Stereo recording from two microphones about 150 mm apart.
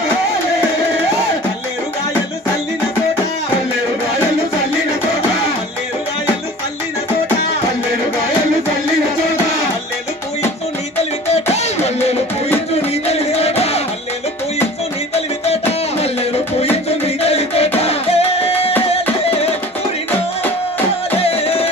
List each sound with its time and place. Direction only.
11.5 s music: 45° left (ahead or behind)
15.1 s music: 45° left (ahead or behind)
21.2 s music: 40° left (ahead or behind)